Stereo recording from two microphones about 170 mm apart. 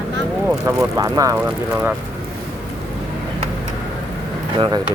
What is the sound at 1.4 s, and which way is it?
Speech, 10° right (ahead or behind).